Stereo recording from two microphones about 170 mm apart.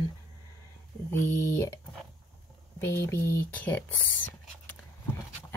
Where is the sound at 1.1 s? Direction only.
15° left (ahead or behind).